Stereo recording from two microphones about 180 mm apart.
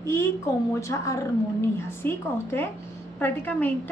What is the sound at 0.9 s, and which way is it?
A woman's voice, 15° left (ahead or behind).